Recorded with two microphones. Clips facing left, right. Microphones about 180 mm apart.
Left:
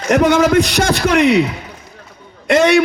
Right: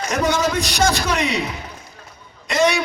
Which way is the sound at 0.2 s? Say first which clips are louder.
Left 7 dB; 60° left (ahead or behind).